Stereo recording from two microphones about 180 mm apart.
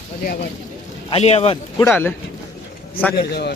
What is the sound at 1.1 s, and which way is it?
Speech, 35° left (ahead or behind).